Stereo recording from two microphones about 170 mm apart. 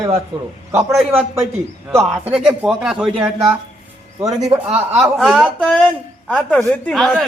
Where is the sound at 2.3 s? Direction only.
5° right (ahead or behind).